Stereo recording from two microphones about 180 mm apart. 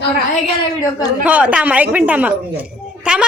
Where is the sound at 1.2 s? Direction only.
5° right (ahead or behind).